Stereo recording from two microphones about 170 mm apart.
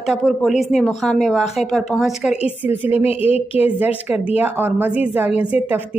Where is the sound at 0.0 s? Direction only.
Centre (ahead or behind).